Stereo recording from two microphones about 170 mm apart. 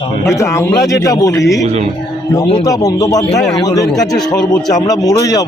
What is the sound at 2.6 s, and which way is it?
Speech, 20° left (ahead or behind).